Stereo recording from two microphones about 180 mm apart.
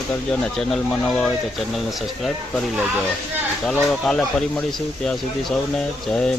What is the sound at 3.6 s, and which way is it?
Speech, 5° left (ahead or behind).